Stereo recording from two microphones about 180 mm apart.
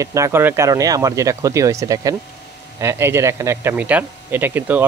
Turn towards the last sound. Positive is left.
turn(degrees=-10)  # may be behind; listen again after turning